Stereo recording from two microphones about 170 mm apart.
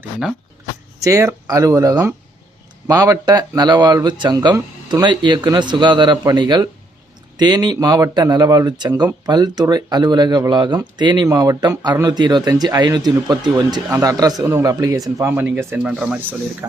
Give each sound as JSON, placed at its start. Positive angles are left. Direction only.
{"t": 1.0, "sound": "speech", "side_deg": -20}